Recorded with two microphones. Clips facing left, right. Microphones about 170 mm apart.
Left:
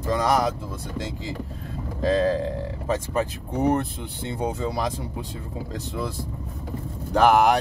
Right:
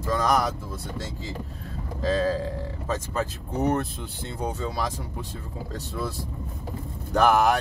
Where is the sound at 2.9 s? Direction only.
15° left (ahead or behind).